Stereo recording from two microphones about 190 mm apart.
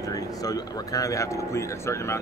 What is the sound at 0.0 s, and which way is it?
Speech, 20° left (ahead or behind).